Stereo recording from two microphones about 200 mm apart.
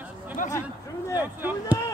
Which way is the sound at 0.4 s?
40° left (ahead or behind).